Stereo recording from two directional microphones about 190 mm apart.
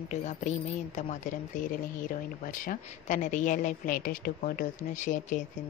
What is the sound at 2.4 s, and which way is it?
A woman's voice, 45° left (ahead or behind).